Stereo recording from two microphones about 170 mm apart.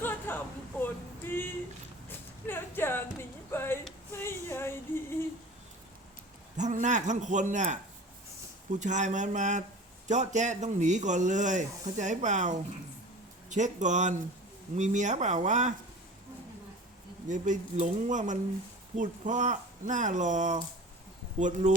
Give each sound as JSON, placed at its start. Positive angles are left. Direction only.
{"t": 0.0, "sound": "a sound", "side_deg": 10}
{"t": 6.6, "sound": "a man's voice", "side_deg": -45}
{"t": 8.8, "sound": "a man's voice", "side_deg": -45}
{"t": 17.2, "sound": "a man's voice", "side_deg": -45}